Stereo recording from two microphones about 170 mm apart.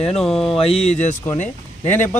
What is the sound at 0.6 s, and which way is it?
Speech, 35° left (ahead or behind).